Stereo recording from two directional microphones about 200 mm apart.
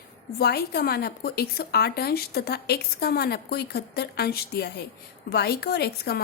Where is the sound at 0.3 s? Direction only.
50° left (ahead or behind).